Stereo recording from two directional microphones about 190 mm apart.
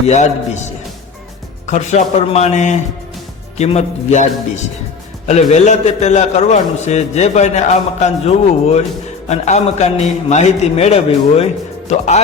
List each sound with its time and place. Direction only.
0.1 s a man's voice: 35° left (ahead or behind)
1.6 s a man's voice: 40° left (ahead or behind)
5.3 s a man's voice: 35° left (ahead or behind)